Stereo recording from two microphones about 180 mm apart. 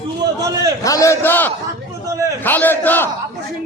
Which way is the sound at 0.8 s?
20° left (ahead or behind).